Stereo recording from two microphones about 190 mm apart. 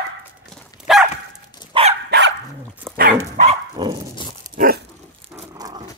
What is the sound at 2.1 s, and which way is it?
Dog, 60° right (ahead or behind).